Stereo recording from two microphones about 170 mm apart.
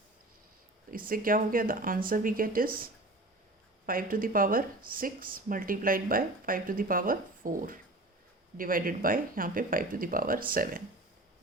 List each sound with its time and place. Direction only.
0.9 s speech: 55° right (ahead or behind)